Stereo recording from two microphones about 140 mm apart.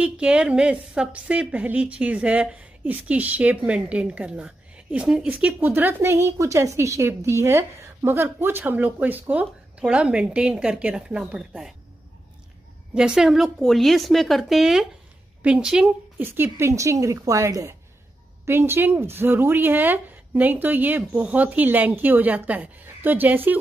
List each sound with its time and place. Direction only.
0.0 s a woman's voice: 5° right (ahead or behind)
12.9 s a woman's voice: 5° right (ahead or behind)
16.3 s a woman's voice: 15° right (ahead or behind)